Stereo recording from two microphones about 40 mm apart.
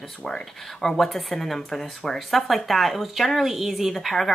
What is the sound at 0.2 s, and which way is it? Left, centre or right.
Speech, centre.